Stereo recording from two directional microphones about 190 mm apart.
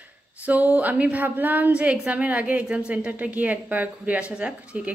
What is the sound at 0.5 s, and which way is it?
A woman's voice, 10° right (ahead or behind).